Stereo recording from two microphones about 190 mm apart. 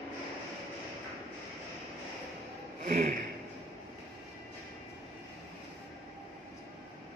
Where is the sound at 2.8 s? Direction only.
40° right (ahead or behind).